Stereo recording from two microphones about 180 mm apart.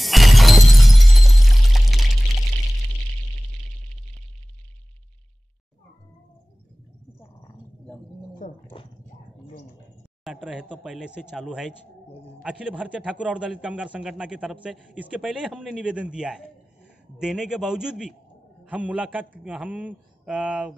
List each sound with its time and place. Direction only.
0.0 s shatter: centre (ahead or behind)
8.4 s a sound: 50° left (ahead or behind)
10.2 s a man's voice: 5° right (ahead or behind)